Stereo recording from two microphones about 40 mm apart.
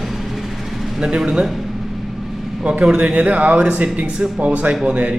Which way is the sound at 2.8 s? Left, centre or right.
Right.